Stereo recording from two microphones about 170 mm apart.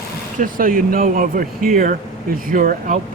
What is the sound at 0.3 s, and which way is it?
Speech, 50° right (ahead or behind).